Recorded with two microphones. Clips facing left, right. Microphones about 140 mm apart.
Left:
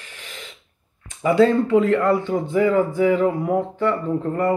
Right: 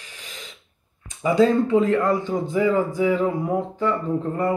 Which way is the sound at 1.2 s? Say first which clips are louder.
Left 2 dB; 15° right (ahead or behind).